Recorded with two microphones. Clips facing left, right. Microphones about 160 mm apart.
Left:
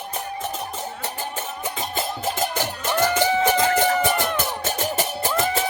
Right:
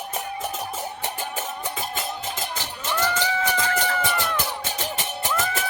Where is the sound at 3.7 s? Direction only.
25° left (ahead or behind).